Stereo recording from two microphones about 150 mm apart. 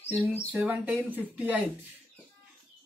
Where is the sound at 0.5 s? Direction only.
10° right (ahead or behind).